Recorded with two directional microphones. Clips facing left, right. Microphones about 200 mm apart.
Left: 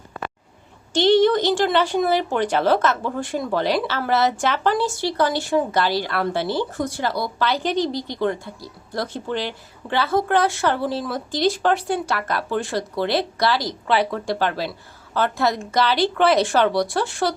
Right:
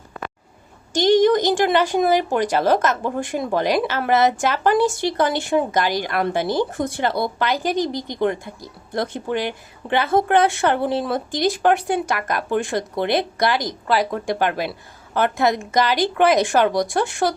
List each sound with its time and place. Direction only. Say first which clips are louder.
1.2 s speech: right 1 dB; 15° right (ahead or behind)